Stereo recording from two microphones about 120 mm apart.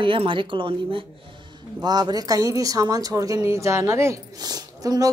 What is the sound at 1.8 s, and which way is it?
A woman's voice, 35° right (ahead or behind).